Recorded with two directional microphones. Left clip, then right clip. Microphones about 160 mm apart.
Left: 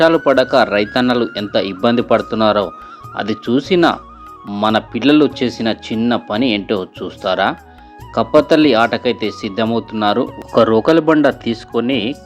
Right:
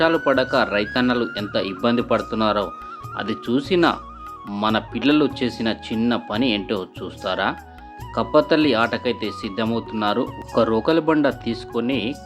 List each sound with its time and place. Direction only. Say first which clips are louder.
0.5 s speech: left 7 dB; 30° left (ahead or behind)